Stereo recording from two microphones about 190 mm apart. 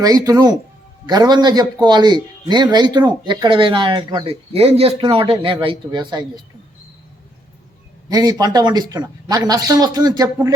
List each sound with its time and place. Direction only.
0.0 s a man's voice: 20° right (ahead or behind)
8.1 s a man's voice: 20° right (ahead or behind)